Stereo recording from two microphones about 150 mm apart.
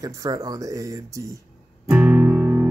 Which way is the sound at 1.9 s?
10° right (ahead or behind).